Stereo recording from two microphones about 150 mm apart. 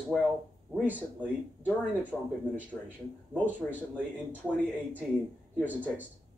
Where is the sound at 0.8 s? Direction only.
10° right (ahead or behind).